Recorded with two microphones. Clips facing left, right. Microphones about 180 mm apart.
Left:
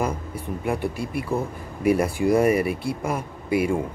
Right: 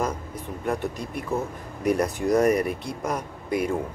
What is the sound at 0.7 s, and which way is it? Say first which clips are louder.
Speech: left 1 dB; 10° left (ahead or behind).